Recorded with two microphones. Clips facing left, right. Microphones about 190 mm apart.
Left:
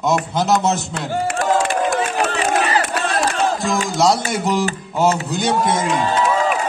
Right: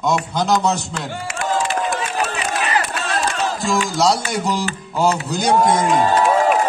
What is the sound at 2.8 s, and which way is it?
Crowd, 60° left (ahead or behind).